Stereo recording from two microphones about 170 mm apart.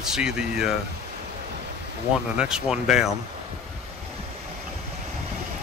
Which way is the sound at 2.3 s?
5° right (ahead or behind).